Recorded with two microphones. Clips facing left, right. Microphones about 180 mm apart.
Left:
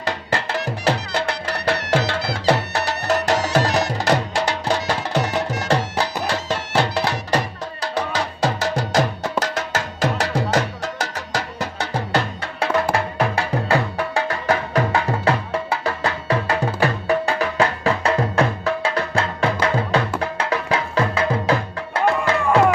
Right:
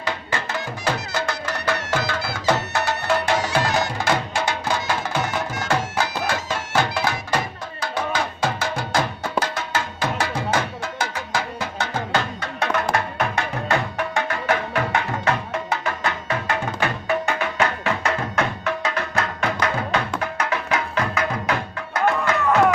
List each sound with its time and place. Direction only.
0.0 s music: 35° left (ahead or behind)